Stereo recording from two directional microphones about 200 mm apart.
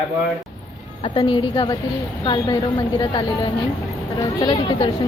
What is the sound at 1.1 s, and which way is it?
Speech, 25° left (ahead or behind).